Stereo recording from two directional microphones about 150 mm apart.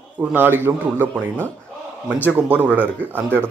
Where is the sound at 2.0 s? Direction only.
10° left (ahead or behind).